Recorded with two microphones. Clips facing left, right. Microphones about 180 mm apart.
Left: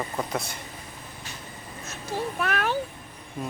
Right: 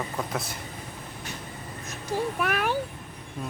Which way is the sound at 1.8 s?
15° right (ahead or behind).